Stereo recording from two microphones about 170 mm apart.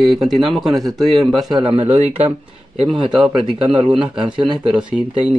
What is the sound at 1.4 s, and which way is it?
Speech, 30° right (ahead or behind).